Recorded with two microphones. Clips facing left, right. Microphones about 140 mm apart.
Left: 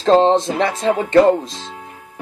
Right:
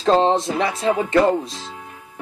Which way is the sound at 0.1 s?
30° left (ahead or behind).